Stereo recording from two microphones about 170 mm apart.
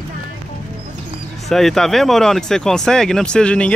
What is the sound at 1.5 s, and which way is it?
Speech, centre (ahead or behind).